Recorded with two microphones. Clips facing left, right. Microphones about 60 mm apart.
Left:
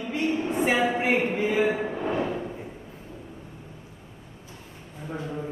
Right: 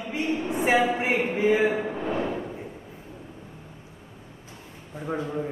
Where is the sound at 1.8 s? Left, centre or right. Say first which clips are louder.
Left 1 dB; centre.